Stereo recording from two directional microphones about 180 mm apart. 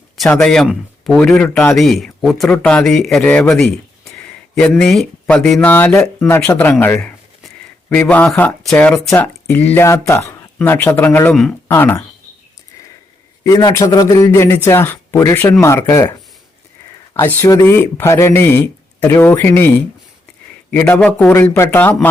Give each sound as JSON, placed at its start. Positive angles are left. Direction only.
{"t": 0.2, "sound": "speech", "side_deg": 5}
{"t": 4.0, "sound": "a sound", "side_deg": 5}
{"t": 5.2, "sound": "speech", "side_deg": 5}
{"t": 13.4, "sound": "speech", "side_deg": 20}
{"t": 17.2, "sound": "speech", "side_deg": 15}